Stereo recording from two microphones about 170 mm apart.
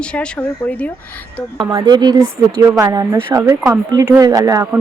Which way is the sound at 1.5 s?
25° right (ahead or behind).